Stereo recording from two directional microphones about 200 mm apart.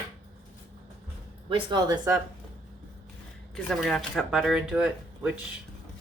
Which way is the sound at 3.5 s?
Centre (ahead or behind).